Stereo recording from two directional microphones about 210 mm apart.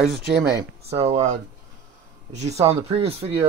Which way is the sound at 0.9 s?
30° right (ahead or behind).